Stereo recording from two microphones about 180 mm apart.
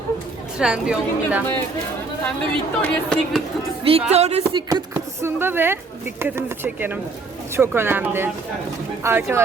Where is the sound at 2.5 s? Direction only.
5° left (ahead or behind).